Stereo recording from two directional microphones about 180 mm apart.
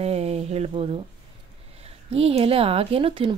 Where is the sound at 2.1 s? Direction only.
35° right (ahead or behind).